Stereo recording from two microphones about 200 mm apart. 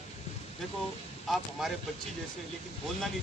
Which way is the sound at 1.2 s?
Centre (ahead or behind).